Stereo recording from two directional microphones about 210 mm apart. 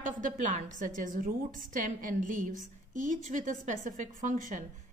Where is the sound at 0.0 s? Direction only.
40° right (ahead or behind).